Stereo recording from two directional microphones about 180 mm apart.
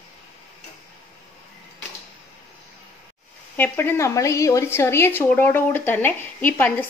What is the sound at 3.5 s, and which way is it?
A woman's voice, 10° left (ahead or behind).